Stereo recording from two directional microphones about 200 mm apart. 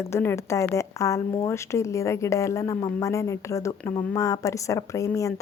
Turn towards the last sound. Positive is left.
turn(degrees=15)  # may be behind; listen again after turning